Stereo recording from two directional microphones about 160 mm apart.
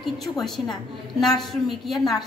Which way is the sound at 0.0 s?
Centre (ahead or behind).